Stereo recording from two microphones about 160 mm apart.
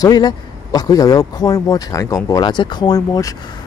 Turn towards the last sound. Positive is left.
turn(degrees=20)  # may be behind; listen again after turning